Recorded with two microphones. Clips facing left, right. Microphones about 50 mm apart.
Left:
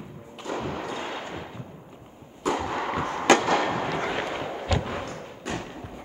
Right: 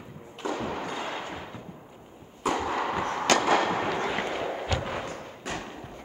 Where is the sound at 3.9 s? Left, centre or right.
Centre.